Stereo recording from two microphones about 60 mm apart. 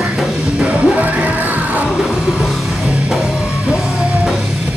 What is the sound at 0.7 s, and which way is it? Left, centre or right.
Music, right.